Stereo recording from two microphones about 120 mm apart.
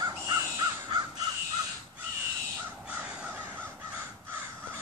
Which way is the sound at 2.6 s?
15° right (ahead or behind).